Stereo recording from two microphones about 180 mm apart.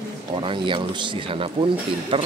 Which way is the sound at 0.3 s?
30° right (ahead or behind).